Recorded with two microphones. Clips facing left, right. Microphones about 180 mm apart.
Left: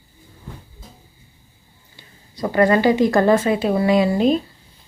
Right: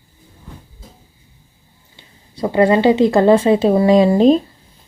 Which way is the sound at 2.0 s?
20° right (ahead or behind).